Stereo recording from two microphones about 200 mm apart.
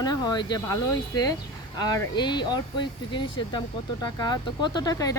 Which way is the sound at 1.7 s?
20° left (ahead or behind).